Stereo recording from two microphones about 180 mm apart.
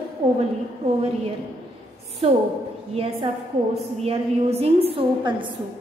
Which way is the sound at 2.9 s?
30° right (ahead or behind).